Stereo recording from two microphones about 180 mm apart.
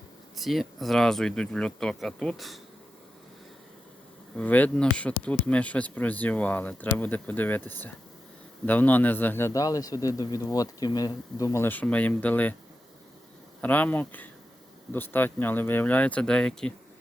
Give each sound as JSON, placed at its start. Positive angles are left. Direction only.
{"t": 0.3, "sound": "speech", "side_deg": 0}
{"t": 4.4, "sound": "a man's voice", "side_deg": 10}
{"t": 13.6, "sound": "a man's voice", "side_deg": 10}